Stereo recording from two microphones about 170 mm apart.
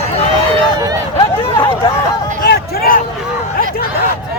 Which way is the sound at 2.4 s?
60° left (ahead or behind).